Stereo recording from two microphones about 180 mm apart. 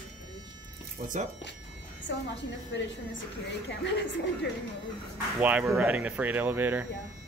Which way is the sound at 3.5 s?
85° left.